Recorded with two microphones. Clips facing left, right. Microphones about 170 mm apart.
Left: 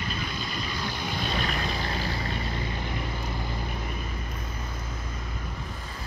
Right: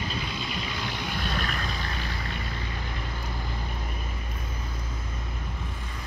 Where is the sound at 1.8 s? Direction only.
35° left (ahead or behind).